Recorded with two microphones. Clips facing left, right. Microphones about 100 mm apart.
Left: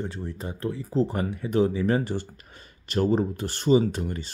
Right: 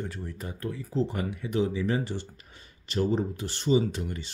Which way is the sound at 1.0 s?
40° left (ahead or behind).